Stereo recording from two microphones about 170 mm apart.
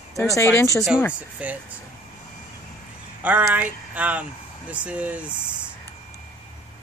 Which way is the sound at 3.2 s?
10° right (ahead or behind).